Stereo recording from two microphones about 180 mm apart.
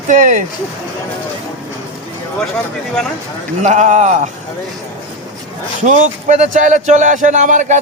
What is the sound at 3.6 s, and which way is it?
Speech, 40° right (ahead or behind).